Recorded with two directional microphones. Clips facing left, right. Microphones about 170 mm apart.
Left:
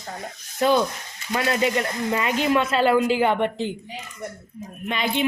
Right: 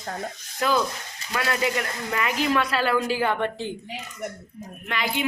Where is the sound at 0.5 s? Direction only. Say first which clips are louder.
Left 4 dB; 25° left (ahead or behind).